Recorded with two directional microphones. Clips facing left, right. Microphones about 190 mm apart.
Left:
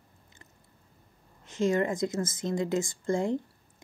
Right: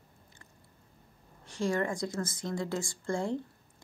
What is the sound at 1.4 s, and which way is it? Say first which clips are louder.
A woman's voice: left 4 dB; 20° left (ahead or behind).